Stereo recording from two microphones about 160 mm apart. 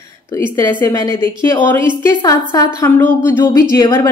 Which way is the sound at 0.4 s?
15° left (ahead or behind).